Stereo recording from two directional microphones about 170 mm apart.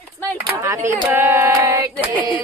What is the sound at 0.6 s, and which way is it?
A woman's voice, 15° right (ahead or behind).